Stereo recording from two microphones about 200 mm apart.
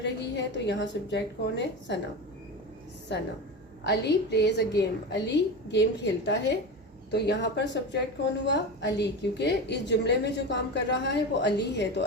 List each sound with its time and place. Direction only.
0.0 s a woman's voice: 60° left (ahead or behind)
3.1 s a woman's voice: 60° left (ahead or behind)